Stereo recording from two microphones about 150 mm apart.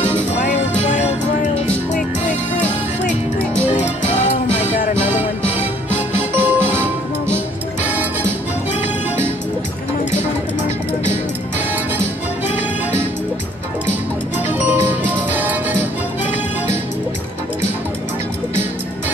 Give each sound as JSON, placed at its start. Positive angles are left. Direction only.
{"t": 0.4, "sound": "music", "side_deg": 50}
{"t": 4.0, "sound": "music", "side_deg": 50}
{"t": 6.3, "sound": "music", "side_deg": -10}
{"t": 14.7, "sound": "music", "side_deg": -10}